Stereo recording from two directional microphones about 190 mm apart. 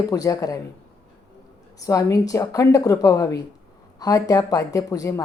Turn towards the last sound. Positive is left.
turn(degrees=15)  # may be behind; listen again after turning